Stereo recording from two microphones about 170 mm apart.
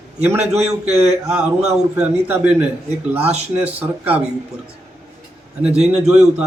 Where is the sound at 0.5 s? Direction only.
40° right (ahead or behind).